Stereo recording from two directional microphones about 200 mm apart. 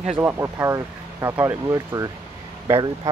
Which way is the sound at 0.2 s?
15° right (ahead or behind).